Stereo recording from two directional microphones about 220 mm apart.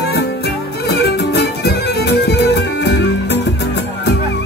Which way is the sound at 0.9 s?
50° left (ahead or behind).